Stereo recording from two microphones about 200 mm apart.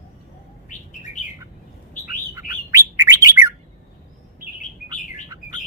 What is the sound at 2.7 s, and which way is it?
Bird, 15° right (ahead or behind).